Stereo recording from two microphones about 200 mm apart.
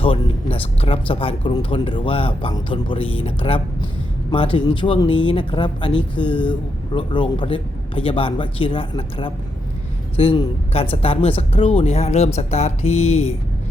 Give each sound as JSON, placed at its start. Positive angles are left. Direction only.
{"t": 0.0, "sound": "speech", "side_deg": 30}